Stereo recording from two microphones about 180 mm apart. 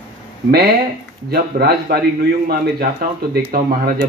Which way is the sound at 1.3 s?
60° right (ahead or behind).